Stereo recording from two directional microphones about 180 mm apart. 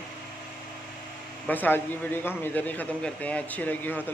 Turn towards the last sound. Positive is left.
turn(degrees=10)  # may be behind; listen again after turning